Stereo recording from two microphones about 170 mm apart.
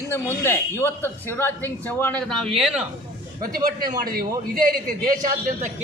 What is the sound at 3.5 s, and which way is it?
A man's voice, 60° right (ahead or behind).